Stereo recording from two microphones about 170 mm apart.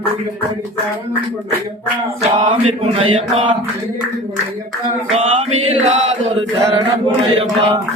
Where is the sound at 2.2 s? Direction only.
40° right (ahead or behind).